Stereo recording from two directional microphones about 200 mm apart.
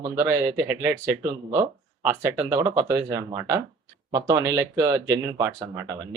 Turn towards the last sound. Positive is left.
turn(degrees=-15)  # may be behind; listen again after turning